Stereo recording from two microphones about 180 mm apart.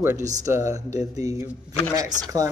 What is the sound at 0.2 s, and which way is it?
Speech, 40° right (ahead or behind).